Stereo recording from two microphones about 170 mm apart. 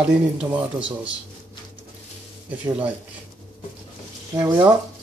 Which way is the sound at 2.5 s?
10° right (ahead or behind).